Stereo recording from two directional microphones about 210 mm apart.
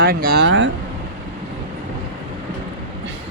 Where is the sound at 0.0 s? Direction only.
45° right (ahead or behind).